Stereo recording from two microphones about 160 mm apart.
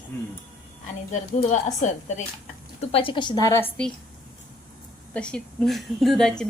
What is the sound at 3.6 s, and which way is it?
Speech, 5° left (ahead or behind).